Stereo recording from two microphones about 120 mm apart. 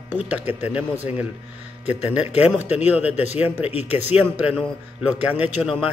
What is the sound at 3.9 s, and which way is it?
A man's voice, 15° right (ahead or behind).